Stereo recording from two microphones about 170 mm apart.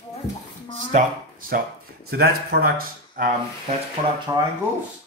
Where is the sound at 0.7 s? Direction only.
50° right (ahead or behind).